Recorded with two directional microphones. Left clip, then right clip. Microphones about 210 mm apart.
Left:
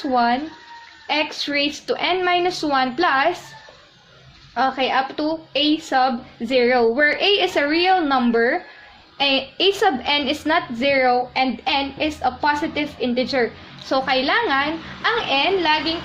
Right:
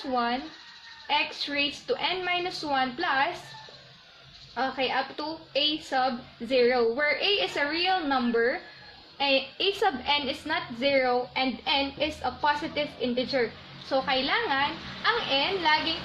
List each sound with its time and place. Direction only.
0.1 s a woman's voice: 45° left (ahead or behind)
4.5 s a woman's voice: 45° left (ahead or behind)